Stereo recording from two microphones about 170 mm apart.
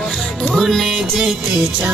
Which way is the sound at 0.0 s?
Centre (ahead or behind).